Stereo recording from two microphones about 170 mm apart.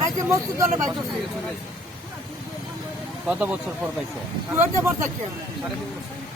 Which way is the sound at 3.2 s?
10° right (ahead or behind).